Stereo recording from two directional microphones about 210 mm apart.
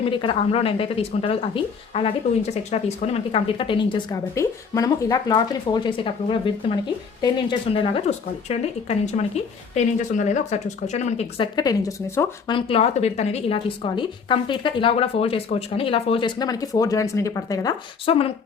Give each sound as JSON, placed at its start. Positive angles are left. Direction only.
{"t": 0.0, "sound": "a woman's voice", "side_deg": 25}